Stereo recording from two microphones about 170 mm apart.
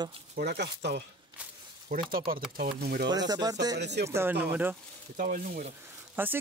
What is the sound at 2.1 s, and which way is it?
Speech, 60° right (ahead or behind).